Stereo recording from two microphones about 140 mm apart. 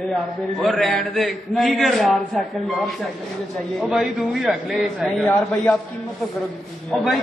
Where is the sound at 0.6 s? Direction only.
Centre (ahead or behind).